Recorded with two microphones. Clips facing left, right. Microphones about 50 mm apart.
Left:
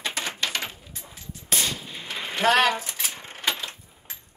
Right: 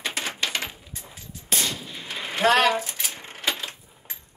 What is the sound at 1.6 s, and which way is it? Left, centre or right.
Gunshot, left.